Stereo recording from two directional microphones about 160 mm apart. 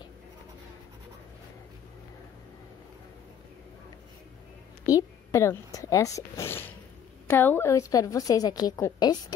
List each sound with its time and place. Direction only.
4.8 s a woman's voice: 20° left (ahead or behind)